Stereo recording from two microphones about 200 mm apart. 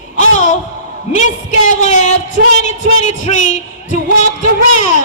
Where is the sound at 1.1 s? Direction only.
40° left (ahead or behind).